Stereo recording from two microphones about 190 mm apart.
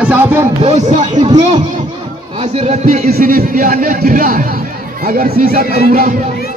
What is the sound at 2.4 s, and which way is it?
Speech, 35° right (ahead or behind).